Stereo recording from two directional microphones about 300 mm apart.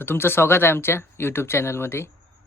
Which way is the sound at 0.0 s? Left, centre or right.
Centre.